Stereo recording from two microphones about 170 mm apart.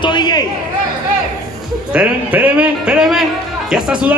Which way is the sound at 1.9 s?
10° right (ahead or behind).